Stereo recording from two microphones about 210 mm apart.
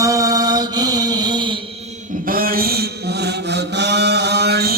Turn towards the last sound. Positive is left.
turn(degrees=-50)  # may be behind; listen again after turning